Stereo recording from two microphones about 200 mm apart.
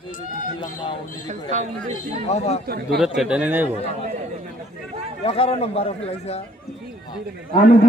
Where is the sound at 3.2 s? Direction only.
5° right (ahead or behind).